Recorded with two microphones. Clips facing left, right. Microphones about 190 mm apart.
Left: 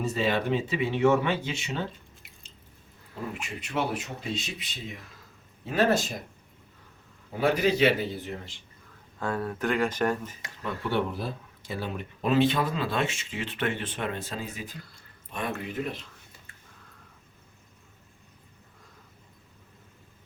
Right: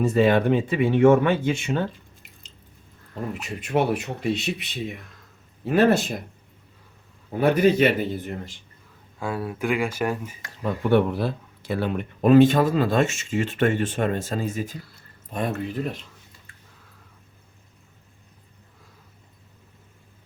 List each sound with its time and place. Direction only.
0.0 s speech: 55° right (ahead or behind)
3.7 s speech: 60° right (ahead or behind)
5.0 s a sound: centre (ahead or behind)
5.6 s speech: 60° right (ahead or behind)
7.3 s speech: 55° right (ahead or behind)
9.1 s speech: 10° right (ahead or behind)
10.8 s speech: 60° right (ahead or behind); by 15.6 s 40° right (ahead or behind)